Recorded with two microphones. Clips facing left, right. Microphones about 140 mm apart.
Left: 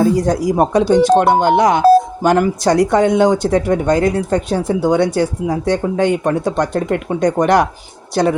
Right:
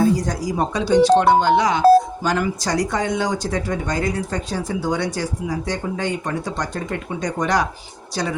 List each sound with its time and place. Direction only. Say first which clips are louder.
0.2 s speech: left 8 dB; 60° left (ahead or behind)